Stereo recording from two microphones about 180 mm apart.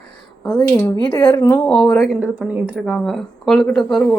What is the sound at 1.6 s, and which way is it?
Speech, 5° left (ahead or behind).